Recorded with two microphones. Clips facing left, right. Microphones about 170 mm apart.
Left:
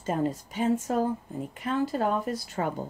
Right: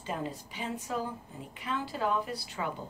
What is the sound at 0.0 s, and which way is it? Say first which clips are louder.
A woman's voice: left 8 dB; 45° left (ahead or behind).